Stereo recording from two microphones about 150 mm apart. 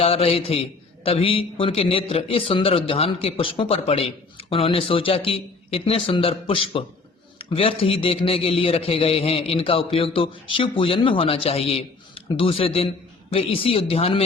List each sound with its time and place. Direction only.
0.0 s a man's voice: 40° left (ahead or behind)